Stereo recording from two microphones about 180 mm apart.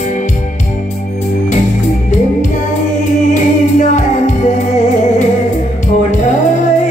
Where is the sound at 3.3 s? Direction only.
40° left (ahead or behind).